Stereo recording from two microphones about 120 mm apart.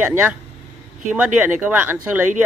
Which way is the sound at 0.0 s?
15° right (ahead or behind).